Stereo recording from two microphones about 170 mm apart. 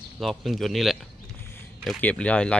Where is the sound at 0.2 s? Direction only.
Centre (ahead or behind).